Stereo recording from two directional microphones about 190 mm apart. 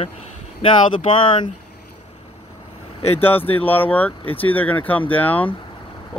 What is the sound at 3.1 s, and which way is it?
Speech, 10° left (ahead or behind).